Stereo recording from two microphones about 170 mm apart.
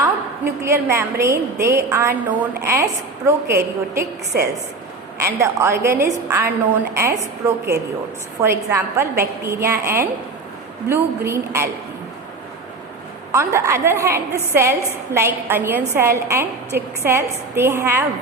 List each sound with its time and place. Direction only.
0.6 s a woman's voice: 15° right (ahead or behind)
13.3 s a woman's voice: 15° right (ahead or behind)